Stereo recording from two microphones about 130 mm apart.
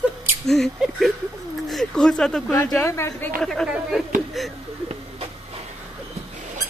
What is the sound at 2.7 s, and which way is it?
Speech, 20° left (ahead or behind).